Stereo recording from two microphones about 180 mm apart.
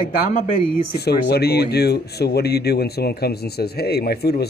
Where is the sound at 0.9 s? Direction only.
65° left (ahead or behind).